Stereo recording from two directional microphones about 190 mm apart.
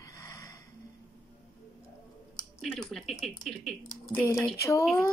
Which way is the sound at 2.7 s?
Centre (ahead or behind).